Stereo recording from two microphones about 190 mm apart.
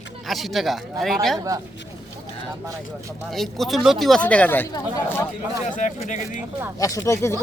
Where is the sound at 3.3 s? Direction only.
Centre (ahead or behind).